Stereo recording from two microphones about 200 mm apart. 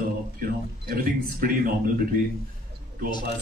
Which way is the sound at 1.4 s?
45° right (ahead or behind).